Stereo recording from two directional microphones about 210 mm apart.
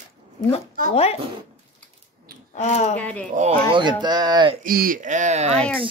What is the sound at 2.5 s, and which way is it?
Speech, 35° left (ahead or behind).